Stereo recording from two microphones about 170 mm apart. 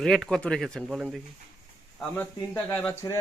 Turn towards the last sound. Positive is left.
turn(degrees=20)  # may be behind; listen again after turning